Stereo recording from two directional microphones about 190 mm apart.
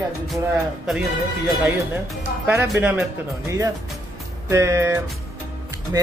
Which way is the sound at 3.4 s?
15° right (ahead or behind).